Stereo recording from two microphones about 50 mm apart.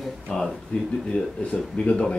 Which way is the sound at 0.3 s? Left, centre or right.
Centre.